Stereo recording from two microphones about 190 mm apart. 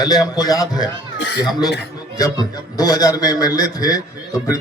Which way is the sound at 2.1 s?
20° left (ahead or behind).